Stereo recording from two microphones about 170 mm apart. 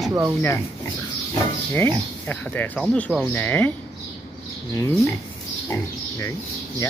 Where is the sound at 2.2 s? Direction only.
10° left (ahead or behind).